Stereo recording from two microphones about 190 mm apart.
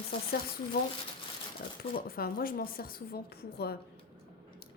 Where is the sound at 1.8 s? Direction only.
50° left (ahead or behind).